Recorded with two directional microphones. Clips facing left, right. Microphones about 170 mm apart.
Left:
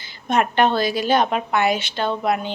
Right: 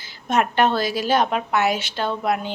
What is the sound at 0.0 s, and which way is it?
A woman's voice, 5° right (ahead or behind).